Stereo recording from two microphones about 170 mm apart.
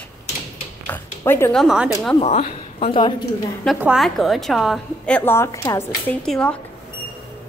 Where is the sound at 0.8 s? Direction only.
15° left (ahead or behind).